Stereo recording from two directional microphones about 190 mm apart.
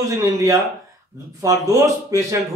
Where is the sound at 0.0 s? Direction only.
15° right (ahead or behind).